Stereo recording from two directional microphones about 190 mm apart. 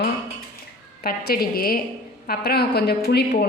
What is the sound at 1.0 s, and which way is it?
A woman's voice, 50° left (ahead or behind).